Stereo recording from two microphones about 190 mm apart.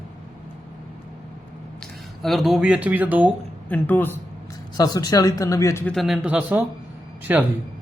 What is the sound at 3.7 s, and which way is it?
A man's voice, 10° left (ahead or behind).